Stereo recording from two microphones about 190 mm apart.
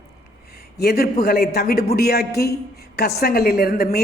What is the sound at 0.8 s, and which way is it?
A woman's voice, 55° left (ahead or behind).